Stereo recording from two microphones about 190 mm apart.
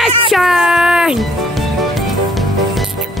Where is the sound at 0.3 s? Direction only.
Centre (ahead or behind).